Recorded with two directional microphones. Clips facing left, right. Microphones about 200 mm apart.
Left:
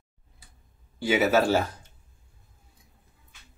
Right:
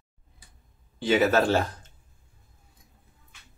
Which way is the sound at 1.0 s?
10° left (ahead or behind).